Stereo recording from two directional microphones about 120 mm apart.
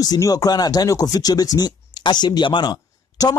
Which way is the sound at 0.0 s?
30° left (ahead or behind).